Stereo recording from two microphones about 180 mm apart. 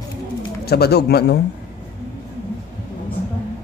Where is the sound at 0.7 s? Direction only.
60° left (ahead or behind).